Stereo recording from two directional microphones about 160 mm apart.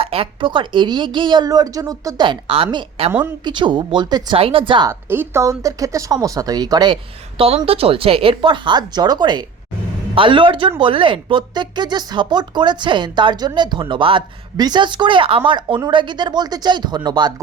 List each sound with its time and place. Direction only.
0.0 s speech: 35° right (ahead or behind)
3.1 s speech: 15° right (ahead or behind)
3.4 s speech: 30° right (ahead or behind)
4.9 s a woman's voice: 15° right (ahead or behind)